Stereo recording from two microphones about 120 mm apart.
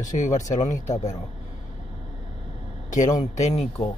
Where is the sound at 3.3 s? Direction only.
70° left (ahead or behind).